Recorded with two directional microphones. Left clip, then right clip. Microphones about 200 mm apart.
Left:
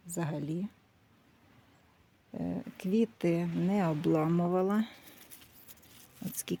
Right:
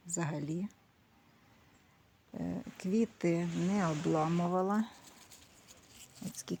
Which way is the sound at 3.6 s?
15° left (ahead or behind).